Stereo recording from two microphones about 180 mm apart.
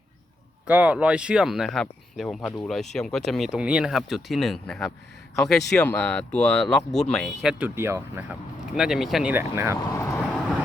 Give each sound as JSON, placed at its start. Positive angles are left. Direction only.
{"t": 0.7, "sound": "speech", "side_deg": -5}
{"t": 7.8, "sound": "speech", "side_deg": -15}
{"t": 9.3, "sound": "speech", "side_deg": -15}
{"t": 9.9, "sound": "vehicle", "side_deg": 15}